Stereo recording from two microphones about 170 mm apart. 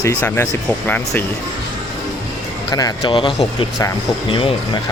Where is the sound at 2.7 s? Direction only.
25° left (ahead or behind).